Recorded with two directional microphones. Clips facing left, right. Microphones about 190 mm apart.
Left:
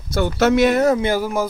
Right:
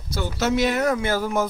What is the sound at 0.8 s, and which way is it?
Speech, 25° left (ahead or behind).